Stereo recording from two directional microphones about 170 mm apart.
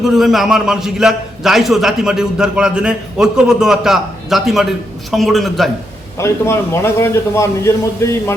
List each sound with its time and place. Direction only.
0.0 s a man's voice: centre (ahead or behind)
6.1 s a man's voice: 15° left (ahead or behind)